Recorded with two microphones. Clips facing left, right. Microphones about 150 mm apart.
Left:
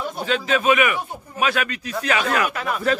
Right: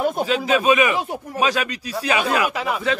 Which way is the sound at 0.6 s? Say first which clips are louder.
Right 1 dB; 15° right (ahead or behind).